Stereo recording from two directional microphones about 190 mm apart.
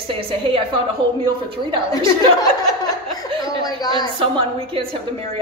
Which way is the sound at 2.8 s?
20° left (ahead or behind).